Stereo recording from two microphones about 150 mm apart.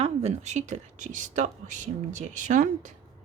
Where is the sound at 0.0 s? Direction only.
50° right (ahead or behind).